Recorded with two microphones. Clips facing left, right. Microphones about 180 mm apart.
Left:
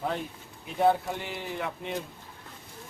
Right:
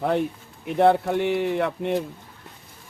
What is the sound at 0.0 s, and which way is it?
Speech, 65° right (ahead or behind).